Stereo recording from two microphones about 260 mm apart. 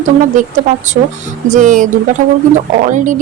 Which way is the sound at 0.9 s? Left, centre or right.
Right.